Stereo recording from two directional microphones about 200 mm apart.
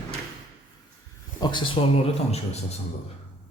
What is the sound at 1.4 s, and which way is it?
Speech, 20° left (ahead or behind).